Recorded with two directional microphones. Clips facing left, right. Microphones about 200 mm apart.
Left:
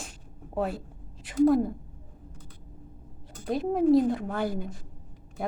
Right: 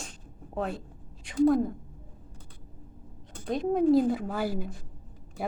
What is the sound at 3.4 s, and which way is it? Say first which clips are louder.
A woman's voice: left 1 dB; 5° left (ahead or behind).